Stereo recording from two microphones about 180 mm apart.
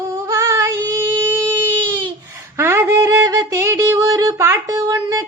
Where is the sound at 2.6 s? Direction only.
15° right (ahead or behind).